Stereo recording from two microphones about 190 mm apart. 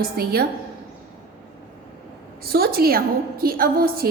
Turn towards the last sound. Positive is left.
turn(degrees=-50)  # may be behind; listen again after turning